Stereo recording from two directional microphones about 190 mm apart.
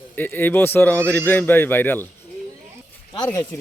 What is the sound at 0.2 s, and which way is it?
Speech, 10° left (ahead or behind).